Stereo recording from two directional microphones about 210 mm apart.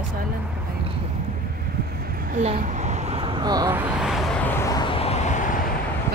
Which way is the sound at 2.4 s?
30° right (ahead or behind).